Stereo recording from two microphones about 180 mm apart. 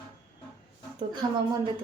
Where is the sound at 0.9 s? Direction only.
25° right (ahead or behind).